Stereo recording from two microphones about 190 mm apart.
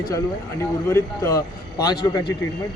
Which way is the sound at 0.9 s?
15° left (ahead or behind).